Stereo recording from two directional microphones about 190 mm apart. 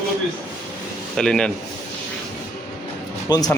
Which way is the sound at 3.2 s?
20° left (ahead or behind).